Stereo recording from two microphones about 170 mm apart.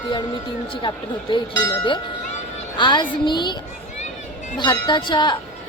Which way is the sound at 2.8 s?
25° left (ahead or behind).